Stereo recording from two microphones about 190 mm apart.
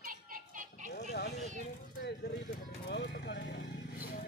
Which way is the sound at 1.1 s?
60° left (ahead or behind).